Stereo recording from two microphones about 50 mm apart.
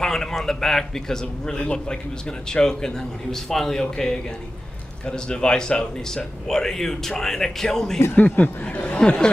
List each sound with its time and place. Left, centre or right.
0.0 s a man's voice: centre
8.2 s speech: left
8.6 s speech: left